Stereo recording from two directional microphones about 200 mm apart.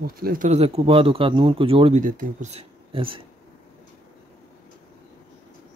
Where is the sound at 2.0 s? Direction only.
40° right (ahead or behind).